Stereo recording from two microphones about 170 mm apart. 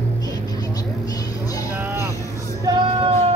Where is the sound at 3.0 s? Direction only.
35° right (ahead or behind).